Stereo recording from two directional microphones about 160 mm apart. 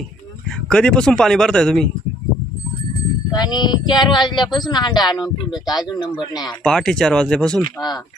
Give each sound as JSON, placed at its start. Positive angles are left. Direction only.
{"t": 0.7, "sound": "speech", "side_deg": 5}
{"t": 3.3, "sound": "speech", "side_deg": 25}
{"t": 6.6, "sound": "speech", "side_deg": 5}
{"t": 7.6, "sound": "speech", "side_deg": 25}